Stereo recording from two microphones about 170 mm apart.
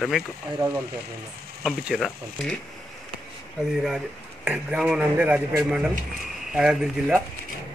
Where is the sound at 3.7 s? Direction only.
5° right (ahead or behind).